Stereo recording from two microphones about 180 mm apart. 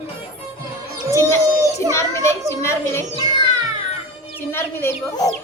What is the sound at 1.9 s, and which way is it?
A child's voice, 15° left (ahead or behind).